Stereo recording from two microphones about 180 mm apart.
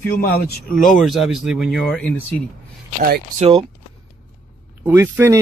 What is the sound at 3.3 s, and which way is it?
Speech, 35° right (ahead or behind).